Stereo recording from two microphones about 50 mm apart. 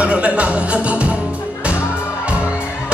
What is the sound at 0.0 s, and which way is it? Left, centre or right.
Music, right.